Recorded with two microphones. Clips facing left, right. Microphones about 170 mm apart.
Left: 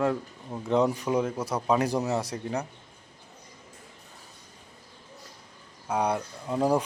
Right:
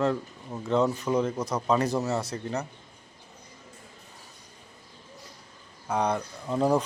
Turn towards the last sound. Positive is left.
turn(degrees=10)  # may be behind; listen again after turning